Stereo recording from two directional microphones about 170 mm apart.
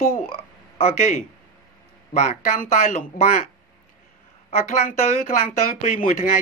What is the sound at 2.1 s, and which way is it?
Speech, 40° left (ahead or behind).